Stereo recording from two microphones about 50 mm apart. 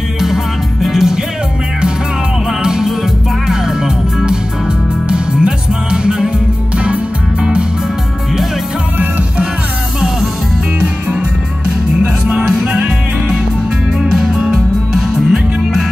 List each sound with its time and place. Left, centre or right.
0.8 s music: centre
2.6 s music: centre
10.8 s music: right; by 15.8 s centre